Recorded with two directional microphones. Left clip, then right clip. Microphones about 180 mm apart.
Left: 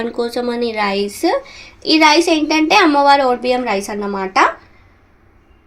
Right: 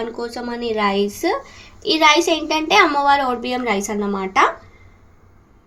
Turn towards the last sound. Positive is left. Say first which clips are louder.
# left 3 dB
turn(degrees=20)  # may be behind; listen again after turning